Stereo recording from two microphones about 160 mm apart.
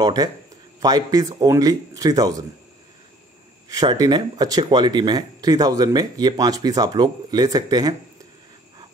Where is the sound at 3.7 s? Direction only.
25° right (ahead or behind).